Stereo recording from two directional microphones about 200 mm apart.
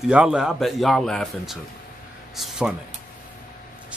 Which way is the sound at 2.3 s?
Centre (ahead or behind).